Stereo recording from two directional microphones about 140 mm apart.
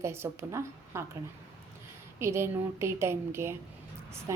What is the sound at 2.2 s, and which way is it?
A woman's voice, 20° right (ahead or behind).